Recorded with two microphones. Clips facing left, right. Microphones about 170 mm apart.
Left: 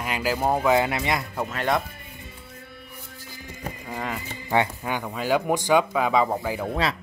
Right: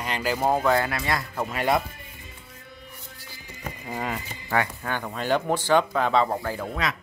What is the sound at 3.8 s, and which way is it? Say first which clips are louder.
Speech: right 1 dB; 5° right (ahead or behind).